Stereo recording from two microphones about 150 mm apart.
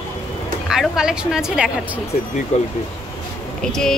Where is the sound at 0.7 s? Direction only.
5° right (ahead or behind).